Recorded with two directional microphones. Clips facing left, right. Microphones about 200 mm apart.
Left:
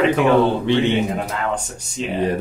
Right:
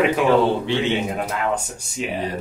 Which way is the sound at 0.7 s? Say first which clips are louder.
Left 4 dB; 60° left (ahead or behind).